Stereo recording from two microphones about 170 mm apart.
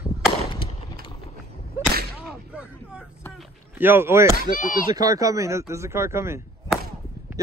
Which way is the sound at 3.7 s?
10° right (ahead or behind).